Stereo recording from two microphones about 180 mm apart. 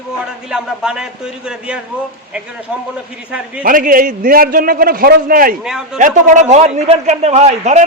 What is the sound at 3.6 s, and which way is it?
A man's voice, 50° right (ahead or behind).